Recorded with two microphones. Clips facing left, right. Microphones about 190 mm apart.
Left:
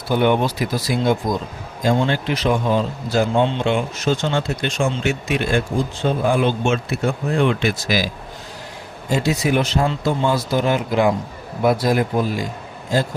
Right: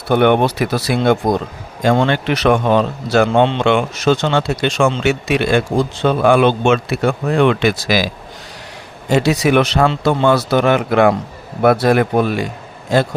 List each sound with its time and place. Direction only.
0.1 s speech: 65° right (ahead or behind)